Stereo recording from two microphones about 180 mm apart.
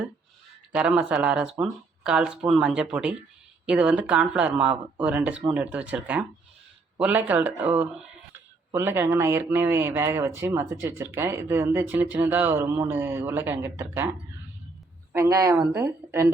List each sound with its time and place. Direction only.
0.7 s speech: 5° right (ahead or behind)
15.1 s speech: 15° right (ahead or behind)